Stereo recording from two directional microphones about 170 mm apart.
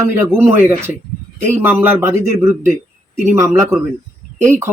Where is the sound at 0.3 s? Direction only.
10° right (ahead or behind).